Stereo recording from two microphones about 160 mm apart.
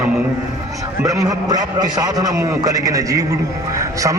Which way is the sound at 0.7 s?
20° right (ahead or behind).